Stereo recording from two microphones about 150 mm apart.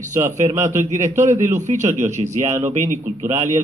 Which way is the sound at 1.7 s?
55° right (ahead or behind).